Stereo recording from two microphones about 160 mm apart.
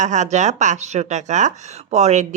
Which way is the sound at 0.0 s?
45° right (ahead or behind).